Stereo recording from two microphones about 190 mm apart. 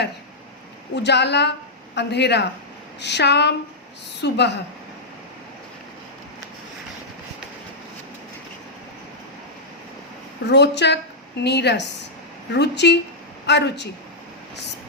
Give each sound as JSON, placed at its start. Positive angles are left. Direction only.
{"t": 0.9, "sound": "a woman's voice", "side_deg": 65}
{"t": 10.4, "sound": "a woman's voice", "side_deg": 65}